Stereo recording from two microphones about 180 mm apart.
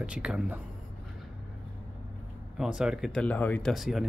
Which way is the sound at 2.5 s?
5° right (ahead or behind).